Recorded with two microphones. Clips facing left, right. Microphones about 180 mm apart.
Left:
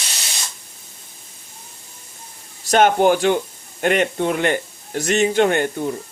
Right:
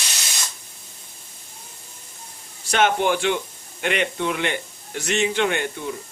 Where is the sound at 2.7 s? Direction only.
45° left (ahead or behind).